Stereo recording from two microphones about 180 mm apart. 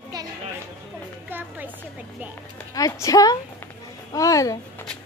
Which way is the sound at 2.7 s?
20° left (ahead or behind).